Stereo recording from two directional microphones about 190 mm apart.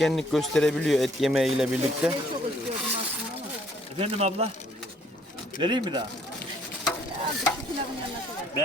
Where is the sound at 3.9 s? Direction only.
35° right (ahead or behind).